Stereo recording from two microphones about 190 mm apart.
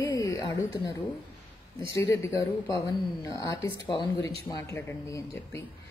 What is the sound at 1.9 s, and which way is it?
Speech, 15° left (ahead or behind).